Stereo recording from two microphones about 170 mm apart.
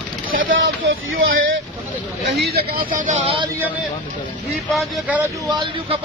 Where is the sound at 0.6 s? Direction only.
70° right (ahead or behind).